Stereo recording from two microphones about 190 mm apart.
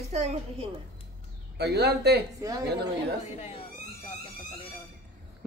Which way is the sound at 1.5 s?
60° right (ahead or behind).